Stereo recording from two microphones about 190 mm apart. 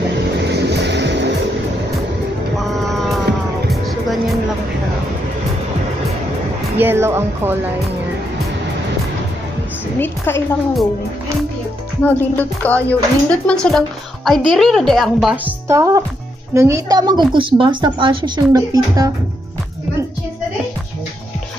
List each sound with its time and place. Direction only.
0.4 s vehicle: 60° right (ahead or behind)
2.8 s music: centre (ahead or behind)
6.8 s speech: 10° right (ahead or behind)
9.9 s a woman's voice: 10° left (ahead or behind)
12.0 s speech: 10° left (ahead or behind)
15.7 s a woman's voice: 15° right (ahead or behind)